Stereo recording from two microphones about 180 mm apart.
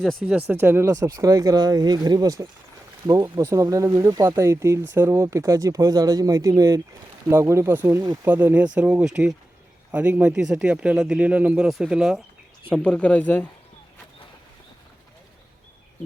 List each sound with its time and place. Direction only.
0.0 s speech: centre (ahead or behind)